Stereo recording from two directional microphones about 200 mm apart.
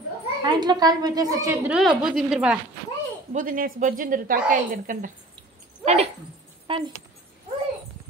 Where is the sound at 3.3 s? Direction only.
45° right (ahead or behind).